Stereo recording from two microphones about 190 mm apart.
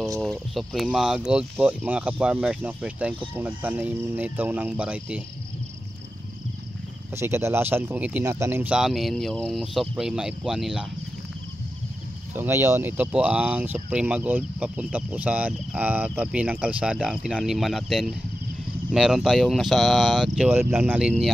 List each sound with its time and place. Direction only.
0.2 s speech: centre (ahead or behind)
7.2 s speech: 15° right (ahead or behind)
12.4 s speech: 15° right (ahead or behind)